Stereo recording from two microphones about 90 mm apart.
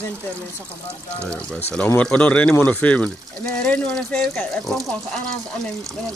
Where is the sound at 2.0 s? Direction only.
15° left (ahead or behind).